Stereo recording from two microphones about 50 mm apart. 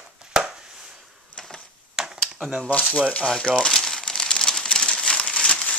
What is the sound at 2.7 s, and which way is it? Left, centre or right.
Speech, left.